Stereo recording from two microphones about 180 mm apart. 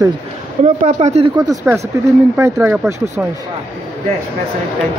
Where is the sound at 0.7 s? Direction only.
40° right (ahead or behind).